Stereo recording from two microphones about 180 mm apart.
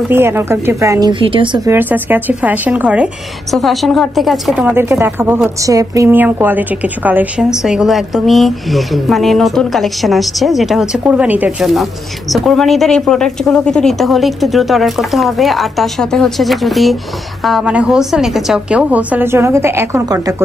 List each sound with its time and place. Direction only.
0.1 s a woman's voice: 15° right (ahead or behind)
1.7 s a woman's voice: 10° right (ahead or behind)